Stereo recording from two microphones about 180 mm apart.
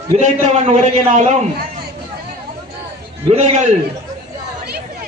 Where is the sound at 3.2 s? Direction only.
35° right (ahead or behind).